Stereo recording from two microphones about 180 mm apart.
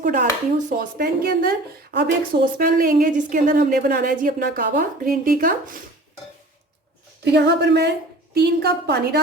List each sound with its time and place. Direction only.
0.0 s speech: 45° right (ahead or behind)
7.3 s a woman's voice: 70° right (ahead or behind)